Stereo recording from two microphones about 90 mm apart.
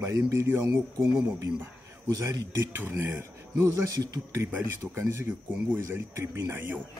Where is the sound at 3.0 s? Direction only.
25° right (ahead or behind).